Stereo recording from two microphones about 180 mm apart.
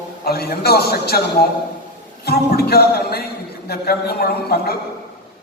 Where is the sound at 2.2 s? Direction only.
60° left (ahead or behind).